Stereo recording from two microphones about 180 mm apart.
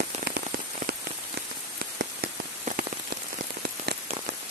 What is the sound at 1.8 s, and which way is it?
Rain on surface, 60° right (ahead or behind).